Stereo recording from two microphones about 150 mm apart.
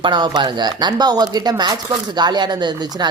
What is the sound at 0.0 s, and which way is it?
Speech, 30° right (ahead or behind).